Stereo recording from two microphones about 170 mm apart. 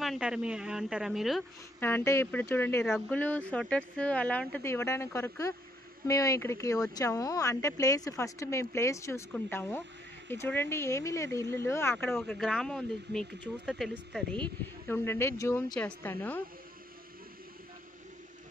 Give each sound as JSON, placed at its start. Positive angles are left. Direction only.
{"t": 0.0, "sound": "speech", "side_deg": 0}
{"t": 1.8, "sound": "speech", "side_deg": 15}
{"t": 12.2, "sound": "speech", "side_deg": 0}